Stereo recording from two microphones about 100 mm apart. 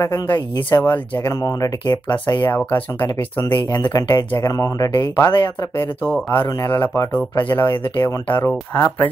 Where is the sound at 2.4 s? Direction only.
20° left (ahead or behind).